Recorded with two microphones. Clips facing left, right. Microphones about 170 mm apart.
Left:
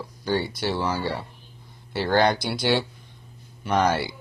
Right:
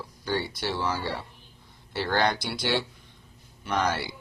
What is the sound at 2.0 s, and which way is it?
Speech, 35° left (ahead or behind).